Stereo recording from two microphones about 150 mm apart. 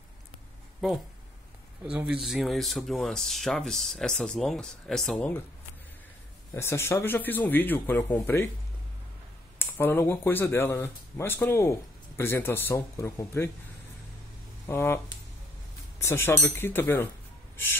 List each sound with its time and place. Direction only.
0.8 s speech: centre (ahead or behind)
6.5 s speech: 15° left (ahead or behind)
9.6 s speech: 15° left (ahead or behind)
14.7 s speech: 15° left (ahead or behind)
16.0 s speech: 15° left (ahead or behind)